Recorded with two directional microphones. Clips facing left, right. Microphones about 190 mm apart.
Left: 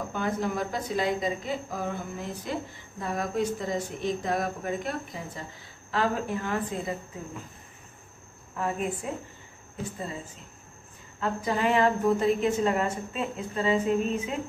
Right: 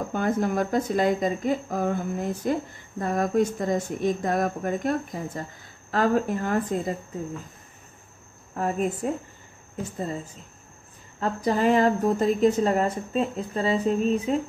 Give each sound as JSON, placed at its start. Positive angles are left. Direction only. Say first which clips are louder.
{"t": 0.1, "sound": "speech", "louder": "right 5 dB", "side_deg": -50}
{"t": 8.5, "sound": "speech", "louder": "right 4 dB", "side_deg": -45}
{"t": 11.1, "sound": "a woman's voice", "louder": "right 4 dB", "side_deg": -40}